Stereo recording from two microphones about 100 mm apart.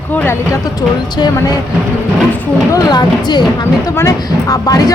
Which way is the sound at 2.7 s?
45° left (ahead or behind).